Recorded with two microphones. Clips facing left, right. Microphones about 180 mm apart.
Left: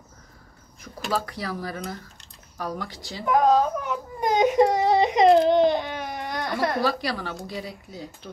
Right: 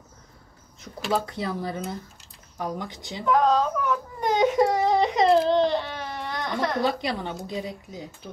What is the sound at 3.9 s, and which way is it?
Baby cry, 15° left (ahead or behind).